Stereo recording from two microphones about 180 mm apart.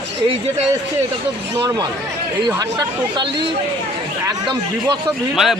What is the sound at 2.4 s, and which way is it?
Speech, 25° right (ahead or behind).